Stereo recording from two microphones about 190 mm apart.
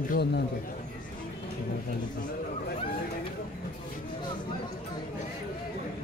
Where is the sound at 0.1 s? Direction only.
60° left (ahead or behind).